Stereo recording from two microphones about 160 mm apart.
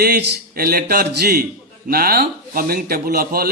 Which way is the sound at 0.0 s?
75° right (ahead or behind).